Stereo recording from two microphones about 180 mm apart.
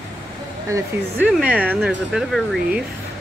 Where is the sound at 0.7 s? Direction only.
10° right (ahead or behind).